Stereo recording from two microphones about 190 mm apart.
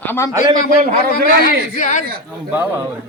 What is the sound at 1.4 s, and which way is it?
Speech, 40° left (ahead or behind).